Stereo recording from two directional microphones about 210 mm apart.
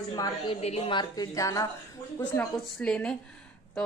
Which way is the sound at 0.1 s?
20° left (ahead or behind).